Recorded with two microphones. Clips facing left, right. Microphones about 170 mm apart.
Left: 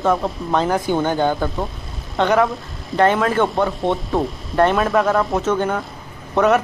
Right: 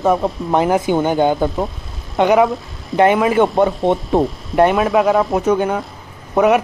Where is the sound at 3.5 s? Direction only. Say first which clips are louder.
Right 4 dB; 25° right (ahead or behind).